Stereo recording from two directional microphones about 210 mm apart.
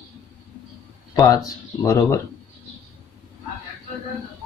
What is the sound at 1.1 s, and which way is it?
Speech, 15° left (ahead or behind).